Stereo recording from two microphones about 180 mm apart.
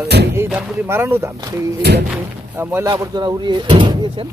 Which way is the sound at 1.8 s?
65° right (ahead or behind).